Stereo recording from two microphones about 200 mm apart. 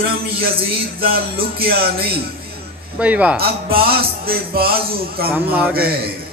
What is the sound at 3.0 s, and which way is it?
Speech, 5° right (ahead or behind).